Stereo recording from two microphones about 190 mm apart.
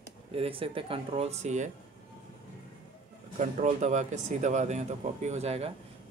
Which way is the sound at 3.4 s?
40° right (ahead or behind).